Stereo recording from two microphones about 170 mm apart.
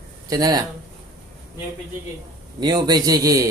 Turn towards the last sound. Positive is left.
turn(degrees=-20)  # may be behind; listen again after turning